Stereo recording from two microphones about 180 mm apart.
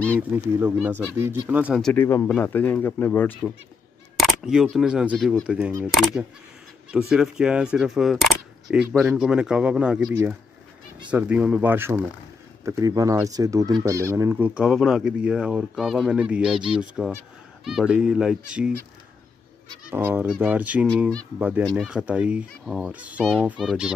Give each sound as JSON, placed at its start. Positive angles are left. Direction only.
{"t": 0.3, "sound": "speech", "side_deg": -10}
{"t": 1.8, "sound": "speech", "side_deg": 5}
{"t": 4.2, "sound": "single-lens reflex camera", "side_deg": 0}
{"t": 4.7, "sound": "speech", "side_deg": -5}
{"t": 6.9, "sound": "speech", "side_deg": -5}
{"t": 19.9, "sound": "speech", "side_deg": -10}